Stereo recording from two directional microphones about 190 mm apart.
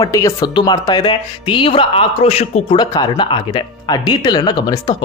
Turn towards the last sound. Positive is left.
turn(degrees=20)  # may be behind; listen again after turning